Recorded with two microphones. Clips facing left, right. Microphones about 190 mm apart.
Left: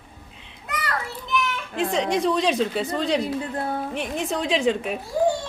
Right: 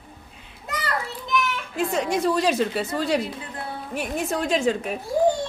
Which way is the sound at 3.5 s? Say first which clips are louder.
Left 7 dB; 45° left (ahead or behind).